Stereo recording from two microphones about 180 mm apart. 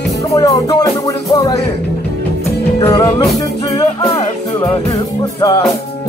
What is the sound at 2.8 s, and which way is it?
Music, 25° left (ahead or behind).